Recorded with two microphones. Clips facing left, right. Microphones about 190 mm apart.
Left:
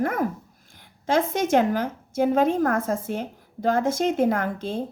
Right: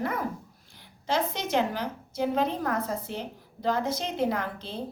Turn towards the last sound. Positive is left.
turn(degrees=50)  # may be behind; listen again after turning